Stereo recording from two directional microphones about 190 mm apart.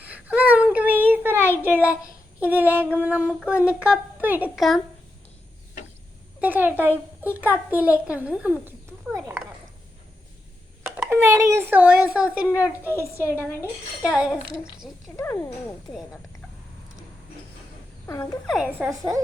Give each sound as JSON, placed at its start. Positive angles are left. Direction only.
{"t": 0.0, "sound": "a sound", "side_deg": -10}
{"t": 2.4, "sound": "speech", "side_deg": -10}
{"t": 6.4, "sound": "speech", "side_deg": -10}
{"t": 10.8, "sound": "speech", "side_deg": -5}
{"t": 15.1, "sound": "speech", "side_deg": 15}
{"t": 18.0, "sound": "speech", "side_deg": 15}
{"t": 18.4, "sound": "speech", "side_deg": -5}